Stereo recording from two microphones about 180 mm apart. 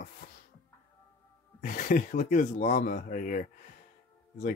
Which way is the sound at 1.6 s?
50° left (ahead or behind).